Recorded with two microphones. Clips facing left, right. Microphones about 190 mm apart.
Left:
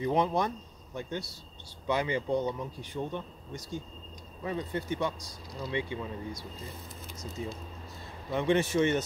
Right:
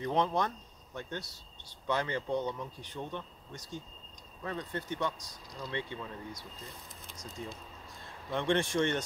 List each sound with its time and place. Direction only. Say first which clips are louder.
0.0 s a man's voice: left 3 dB; 10° left (ahead or behind)